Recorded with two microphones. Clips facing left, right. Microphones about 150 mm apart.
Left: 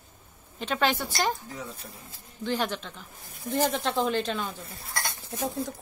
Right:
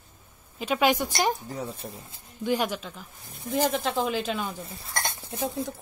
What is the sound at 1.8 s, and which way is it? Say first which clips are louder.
Speech: right 7 dB; 45° right (ahead or behind).